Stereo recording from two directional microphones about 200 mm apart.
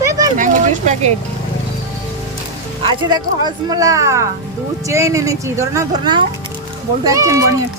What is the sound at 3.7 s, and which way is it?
Speech, 15° right (ahead or behind).